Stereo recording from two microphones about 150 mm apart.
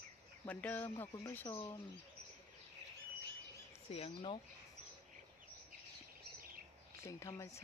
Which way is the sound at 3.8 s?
40° left (ahead or behind).